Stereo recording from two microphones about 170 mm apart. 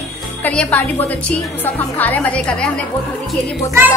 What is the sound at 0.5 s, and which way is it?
Speech, 10° left (ahead or behind).